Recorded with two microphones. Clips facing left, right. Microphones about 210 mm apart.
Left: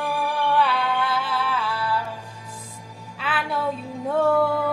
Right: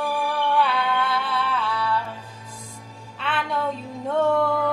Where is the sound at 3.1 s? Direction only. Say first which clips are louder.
Even; 5° left (ahead or behind).